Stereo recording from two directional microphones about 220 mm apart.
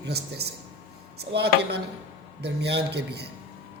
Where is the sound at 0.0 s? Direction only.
45° right (ahead or behind).